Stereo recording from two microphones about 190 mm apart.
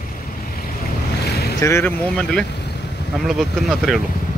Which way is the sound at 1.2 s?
55° left (ahead or behind).